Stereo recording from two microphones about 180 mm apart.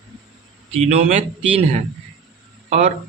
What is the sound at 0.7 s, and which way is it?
Speech, 40° right (ahead or behind).